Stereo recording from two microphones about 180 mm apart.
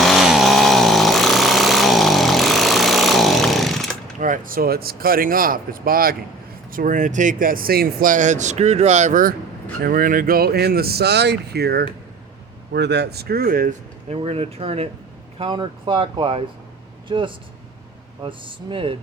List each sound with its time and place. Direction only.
0.0 s chainsaw: centre (ahead or behind)
4.2 s speech: 50° right (ahead or behind)
14.1 s speech: 35° right (ahead or behind)